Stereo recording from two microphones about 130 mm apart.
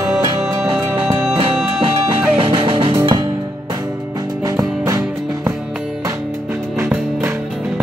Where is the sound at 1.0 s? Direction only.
40° right (ahead or behind).